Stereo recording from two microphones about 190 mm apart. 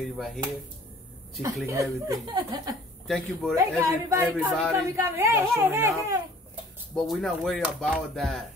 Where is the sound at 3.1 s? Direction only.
Centre (ahead or behind).